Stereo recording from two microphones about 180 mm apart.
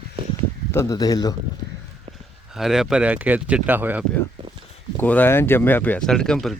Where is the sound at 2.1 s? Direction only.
35° right (ahead or behind).